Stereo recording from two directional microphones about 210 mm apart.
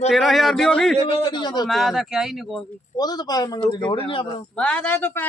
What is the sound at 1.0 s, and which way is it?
Speech, 25° left (ahead or behind).